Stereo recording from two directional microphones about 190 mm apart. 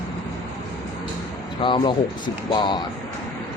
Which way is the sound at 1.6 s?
25° left (ahead or behind).